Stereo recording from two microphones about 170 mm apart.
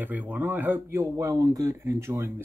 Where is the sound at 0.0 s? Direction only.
10° right (ahead or behind).